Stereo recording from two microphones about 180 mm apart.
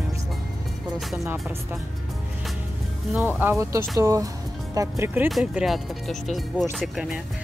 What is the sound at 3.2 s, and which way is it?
Speech, 10° right (ahead or behind).